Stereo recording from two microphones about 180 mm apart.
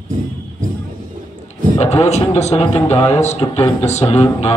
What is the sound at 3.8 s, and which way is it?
Speech, 40° left (ahead or behind).